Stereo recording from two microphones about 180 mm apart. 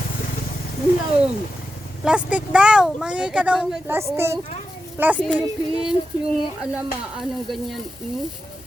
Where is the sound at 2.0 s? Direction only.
5° right (ahead or behind).